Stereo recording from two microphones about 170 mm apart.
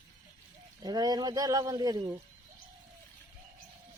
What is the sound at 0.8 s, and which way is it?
Speech, 25° right (ahead or behind).